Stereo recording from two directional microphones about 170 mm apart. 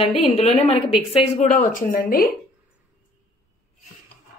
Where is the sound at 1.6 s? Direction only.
50° left (ahead or behind).